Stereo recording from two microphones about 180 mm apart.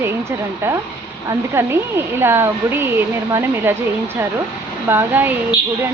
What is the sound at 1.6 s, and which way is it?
Speech, 15° right (ahead or behind).